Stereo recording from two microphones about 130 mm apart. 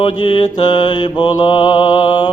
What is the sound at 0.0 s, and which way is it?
Mantra, 40° left (ahead or behind).